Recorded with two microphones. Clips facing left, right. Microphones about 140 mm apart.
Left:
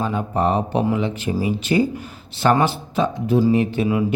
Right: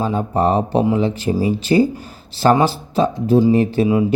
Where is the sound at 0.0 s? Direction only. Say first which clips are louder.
Right 3 dB; 35° right (ahead or behind).